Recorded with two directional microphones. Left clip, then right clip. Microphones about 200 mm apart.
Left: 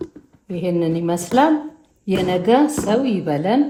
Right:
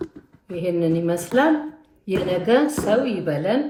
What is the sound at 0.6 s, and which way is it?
Speech, 45° left (ahead or behind).